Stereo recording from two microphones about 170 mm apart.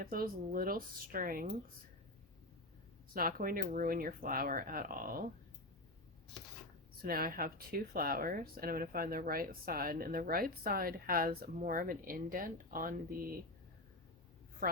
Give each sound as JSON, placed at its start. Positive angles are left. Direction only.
{"t": 0.0, "sound": "speech", "side_deg": -60}
{"t": 3.1, "sound": "speech", "side_deg": -60}
{"t": 7.0, "sound": "speech", "side_deg": -60}